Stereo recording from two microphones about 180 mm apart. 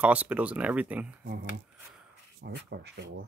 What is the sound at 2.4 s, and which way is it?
Speech, 70° right (ahead or behind).